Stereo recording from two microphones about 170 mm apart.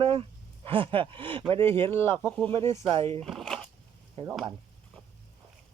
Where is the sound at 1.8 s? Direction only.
15° left (ahead or behind).